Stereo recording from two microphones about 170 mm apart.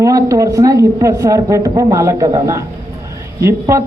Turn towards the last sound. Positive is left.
turn(degrees=-15)  # may be behind; listen again after turning